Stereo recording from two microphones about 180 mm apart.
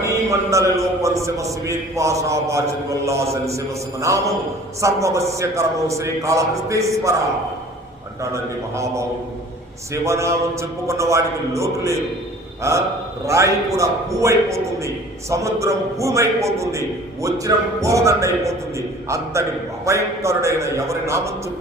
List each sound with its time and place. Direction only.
0.0 s a man's voice: 15° right (ahead or behind)
8.2 s a man's voice: 15° right (ahead or behind)